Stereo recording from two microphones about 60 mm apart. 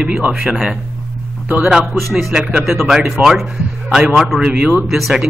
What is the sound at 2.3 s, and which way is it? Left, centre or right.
A man's voice, centre.